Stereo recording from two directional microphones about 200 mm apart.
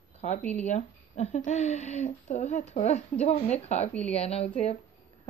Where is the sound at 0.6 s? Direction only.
35° left (ahead or behind).